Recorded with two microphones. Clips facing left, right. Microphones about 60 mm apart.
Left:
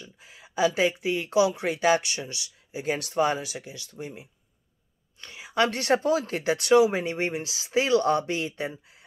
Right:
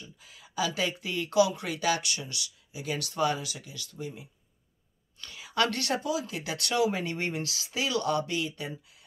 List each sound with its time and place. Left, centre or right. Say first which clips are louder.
0.2 s speech: left 7 dB; left
5.2 s a sound: left 3 dB; left
6.0 s speech: left 7 dB; left
6.4 s speech: left 9 dB; left